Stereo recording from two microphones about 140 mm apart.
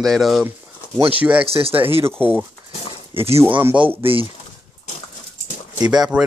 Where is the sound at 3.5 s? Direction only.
15° right (ahead or behind).